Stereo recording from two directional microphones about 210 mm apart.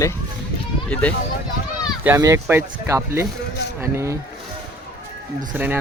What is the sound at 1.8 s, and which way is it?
Speech, 10° right (ahead or behind).